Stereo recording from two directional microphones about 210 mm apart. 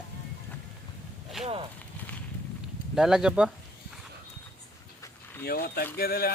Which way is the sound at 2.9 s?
Centre (ahead or behind).